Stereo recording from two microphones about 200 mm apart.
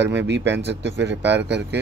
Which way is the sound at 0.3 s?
60° right (ahead or behind).